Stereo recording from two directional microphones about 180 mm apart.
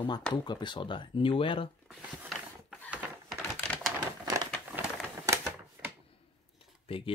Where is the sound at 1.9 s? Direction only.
Centre (ahead or behind).